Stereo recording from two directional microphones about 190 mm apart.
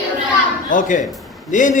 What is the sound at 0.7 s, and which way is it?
A man's voice, 45° left (ahead or behind).